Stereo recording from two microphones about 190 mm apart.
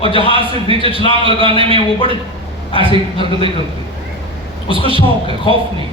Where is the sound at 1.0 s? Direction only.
25° left (ahead or behind).